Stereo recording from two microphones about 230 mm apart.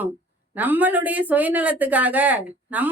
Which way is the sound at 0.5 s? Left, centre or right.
Centre.